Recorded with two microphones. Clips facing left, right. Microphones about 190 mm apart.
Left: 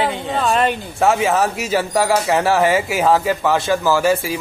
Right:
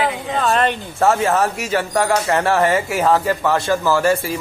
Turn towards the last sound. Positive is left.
turn(degrees=0)  # may be behind; listen again after turning